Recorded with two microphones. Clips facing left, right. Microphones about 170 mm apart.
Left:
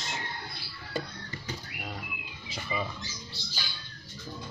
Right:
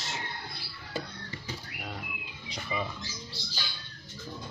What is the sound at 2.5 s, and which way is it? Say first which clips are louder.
Speech: even; centre (ahead or behind).